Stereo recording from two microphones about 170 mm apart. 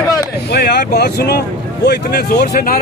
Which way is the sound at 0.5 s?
70° left (ahead or behind).